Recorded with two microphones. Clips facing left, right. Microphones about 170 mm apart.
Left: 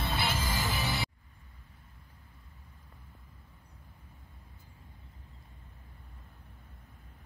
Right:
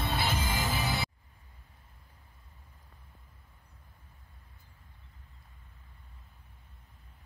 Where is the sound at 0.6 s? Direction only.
35° right (ahead or behind).